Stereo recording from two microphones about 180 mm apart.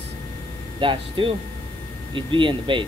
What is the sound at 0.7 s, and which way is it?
Speech, 30° right (ahead or behind).